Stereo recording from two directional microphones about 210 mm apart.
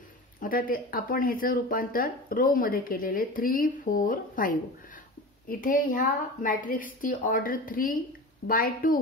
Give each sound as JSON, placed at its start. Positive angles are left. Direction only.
{"t": 0.4, "sound": "a woman's voice", "side_deg": 40}